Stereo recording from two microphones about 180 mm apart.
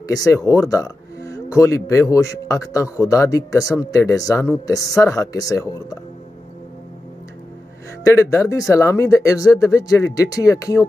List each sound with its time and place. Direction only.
0.1 s speech: 20° left (ahead or behind)
8.0 s speech: 15° left (ahead or behind)